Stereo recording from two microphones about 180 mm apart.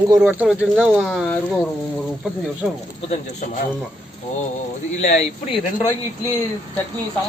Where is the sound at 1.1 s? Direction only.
5° left (ahead or behind).